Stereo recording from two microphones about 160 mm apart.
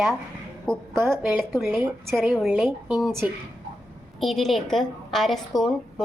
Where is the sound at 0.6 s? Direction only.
5° left (ahead or behind).